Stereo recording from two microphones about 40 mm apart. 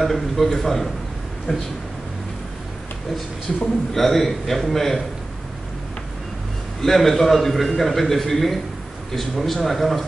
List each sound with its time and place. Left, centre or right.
0.0 s a man's voice: centre
3.5 s a man's voice: centre
6.8 s a man's voice: centre